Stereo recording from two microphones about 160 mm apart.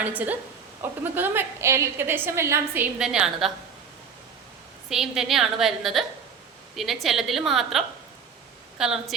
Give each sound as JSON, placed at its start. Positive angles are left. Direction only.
{"t": 0.0, "sound": "a woman's voice", "side_deg": -10}
{"t": 3.0, "sound": "a woman's voice", "side_deg": -5}
{"t": 4.9, "sound": "a woman's voice", "side_deg": -5}